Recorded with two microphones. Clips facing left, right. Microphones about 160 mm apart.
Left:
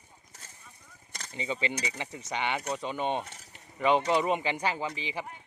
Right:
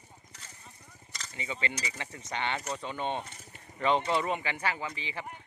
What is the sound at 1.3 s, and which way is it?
Speech, 20° left (ahead or behind).